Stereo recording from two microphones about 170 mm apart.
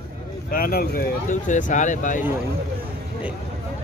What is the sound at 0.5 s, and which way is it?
Speech, 60° left (ahead or behind).